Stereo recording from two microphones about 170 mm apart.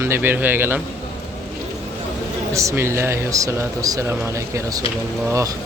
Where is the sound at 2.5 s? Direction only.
15° right (ahead or behind).